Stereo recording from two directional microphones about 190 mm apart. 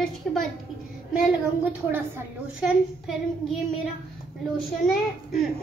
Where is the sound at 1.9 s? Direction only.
10° right (ahead or behind).